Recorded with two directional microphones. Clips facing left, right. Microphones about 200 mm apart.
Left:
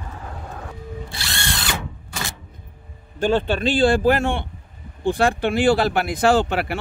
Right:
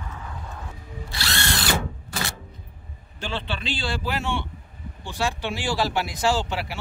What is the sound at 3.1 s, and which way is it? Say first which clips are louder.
Speech: left 12 dB; 45° left (ahead or behind).